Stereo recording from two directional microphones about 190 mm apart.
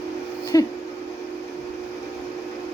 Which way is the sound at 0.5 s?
20° left (ahead or behind).